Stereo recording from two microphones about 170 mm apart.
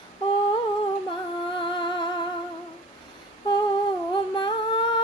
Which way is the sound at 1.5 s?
30° left (ahead or behind).